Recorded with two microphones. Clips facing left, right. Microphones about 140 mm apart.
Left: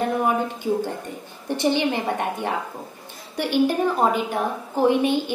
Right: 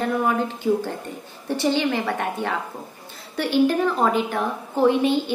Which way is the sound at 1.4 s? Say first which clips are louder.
Even; 20° left (ahead or behind).